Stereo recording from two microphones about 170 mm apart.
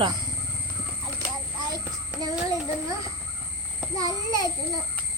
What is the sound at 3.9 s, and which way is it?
Speech, 20° right (ahead or behind).